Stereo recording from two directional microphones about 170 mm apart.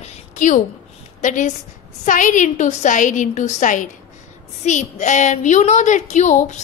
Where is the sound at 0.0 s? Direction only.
50° left (ahead or behind).